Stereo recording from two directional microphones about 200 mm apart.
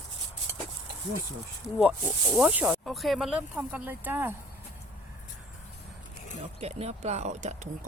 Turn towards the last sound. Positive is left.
turn(degrees=-35)  # may be behind; listen again after turning